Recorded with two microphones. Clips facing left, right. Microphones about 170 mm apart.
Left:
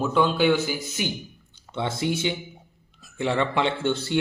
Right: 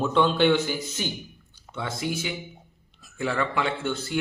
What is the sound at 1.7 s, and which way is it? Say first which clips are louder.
A man's voice: left 4 dB; 25° left (ahead or behind).